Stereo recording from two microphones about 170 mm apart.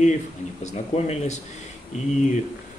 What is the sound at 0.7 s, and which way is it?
Speech, 40° left (ahead or behind).